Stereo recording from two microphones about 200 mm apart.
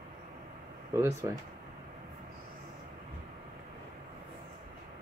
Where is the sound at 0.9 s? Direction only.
15° right (ahead or behind).